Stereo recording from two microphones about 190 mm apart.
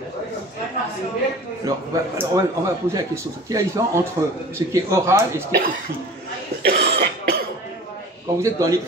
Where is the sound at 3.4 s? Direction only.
15° right (ahead or behind).